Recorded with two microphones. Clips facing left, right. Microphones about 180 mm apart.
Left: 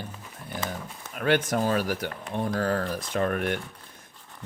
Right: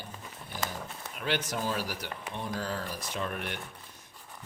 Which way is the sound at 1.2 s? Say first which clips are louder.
Left 8 dB; 55° left (ahead or behind).